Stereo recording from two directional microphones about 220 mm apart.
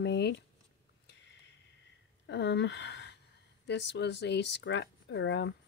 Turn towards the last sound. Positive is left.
turn(degrees=55)  # may be behind; listen again after turning